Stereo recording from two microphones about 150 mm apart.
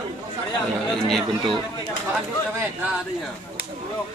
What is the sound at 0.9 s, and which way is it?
Speech, 5° left (ahead or behind).